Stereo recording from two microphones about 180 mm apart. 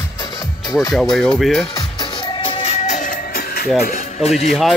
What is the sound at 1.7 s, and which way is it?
Music, 25° left (ahead or behind).